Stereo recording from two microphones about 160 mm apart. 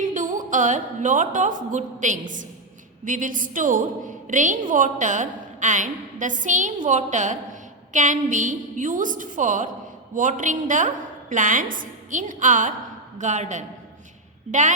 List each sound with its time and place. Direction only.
0.0 s a woman's voice: 55° right (ahead or behind)